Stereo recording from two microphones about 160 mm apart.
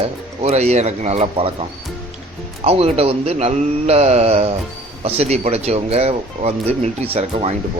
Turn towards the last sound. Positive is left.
turn(degrees=-40)  # may be behind; listen again after turning